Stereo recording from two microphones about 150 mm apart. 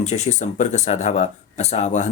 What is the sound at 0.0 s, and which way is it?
Speech, 50° left (ahead or behind).